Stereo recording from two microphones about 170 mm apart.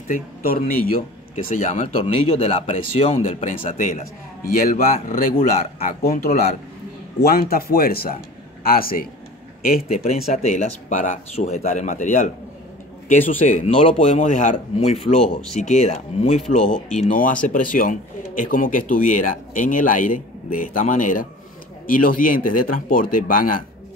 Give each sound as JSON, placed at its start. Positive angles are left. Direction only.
{"t": 0.1, "sound": "speech", "side_deg": 55}
{"t": 1.3, "sound": "speech", "side_deg": 40}
{"t": 9.9, "sound": "speech", "side_deg": 40}
{"t": 13.5, "sound": "speech", "side_deg": 40}